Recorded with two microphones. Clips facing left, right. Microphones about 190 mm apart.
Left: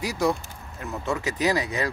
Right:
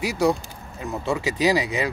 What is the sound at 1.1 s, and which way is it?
Speech, 10° right (ahead or behind).